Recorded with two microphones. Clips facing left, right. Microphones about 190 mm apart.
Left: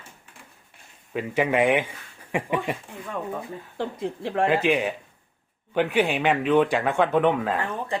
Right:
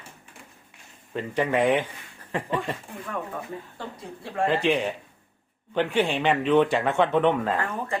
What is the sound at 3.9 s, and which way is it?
Speech, 85° left.